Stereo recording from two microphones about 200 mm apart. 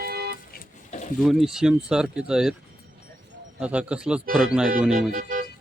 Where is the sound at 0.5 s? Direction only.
40° left (ahead or behind).